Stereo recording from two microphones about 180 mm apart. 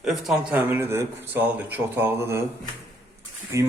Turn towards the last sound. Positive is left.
turn(degrees=-20)  # may be behind; listen again after turning